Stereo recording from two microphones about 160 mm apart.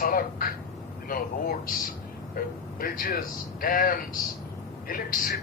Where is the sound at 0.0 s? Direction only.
65° left (ahead or behind).